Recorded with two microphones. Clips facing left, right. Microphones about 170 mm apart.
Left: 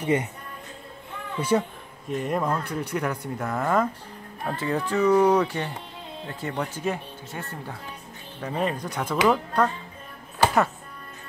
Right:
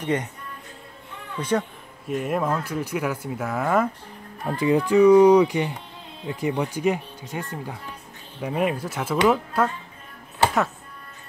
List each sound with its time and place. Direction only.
0.0 s speech: 10° left (ahead or behind)
1.5 s speech: 10° left (ahead or behind)
2.0 s speech: 5° right (ahead or behind)